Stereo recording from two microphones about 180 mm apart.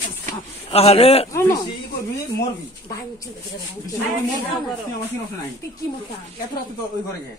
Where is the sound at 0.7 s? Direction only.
35° left (ahead or behind).